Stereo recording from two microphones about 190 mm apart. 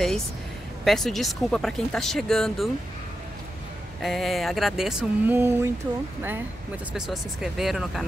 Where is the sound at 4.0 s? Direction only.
Centre (ahead or behind).